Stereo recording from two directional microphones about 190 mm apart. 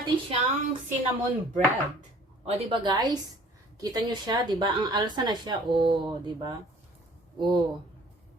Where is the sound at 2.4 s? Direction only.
25° right (ahead or behind).